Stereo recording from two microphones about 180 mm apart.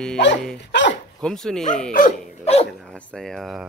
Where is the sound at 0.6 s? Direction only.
75° left (ahead or behind).